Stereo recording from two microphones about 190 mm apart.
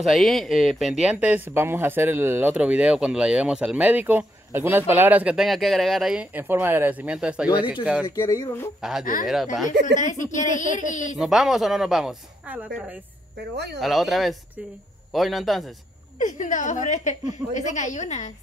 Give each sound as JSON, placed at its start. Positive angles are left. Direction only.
{"t": 0.0, "sound": "speech", "side_deg": 0}
{"t": 7.4, "sound": "speech", "side_deg": 25}
{"t": 8.8, "sound": "speech", "side_deg": -5}
{"t": 9.9, "sound": "speech", "side_deg": 40}
{"t": 11.1, "sound": "speech", "side_deg": 0}
{"t": 16.2, "sound": "speech", "side_deg": 40}